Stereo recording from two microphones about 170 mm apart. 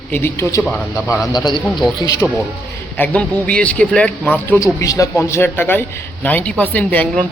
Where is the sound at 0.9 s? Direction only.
20° left (ahead or behind).